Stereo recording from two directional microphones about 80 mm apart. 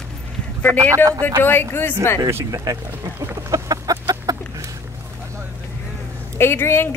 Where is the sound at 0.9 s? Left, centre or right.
Right.